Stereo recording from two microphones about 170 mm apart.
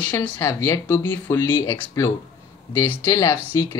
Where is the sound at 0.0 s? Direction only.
10° left (ahead or behind).